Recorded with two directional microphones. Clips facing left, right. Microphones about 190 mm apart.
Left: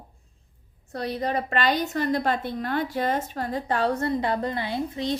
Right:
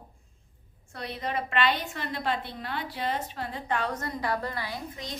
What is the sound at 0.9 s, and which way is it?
A woman's voice, 40° left (ahead or behind).